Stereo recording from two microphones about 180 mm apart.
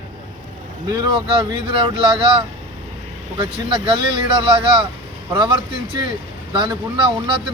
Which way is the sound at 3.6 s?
25° right (ahead or behind).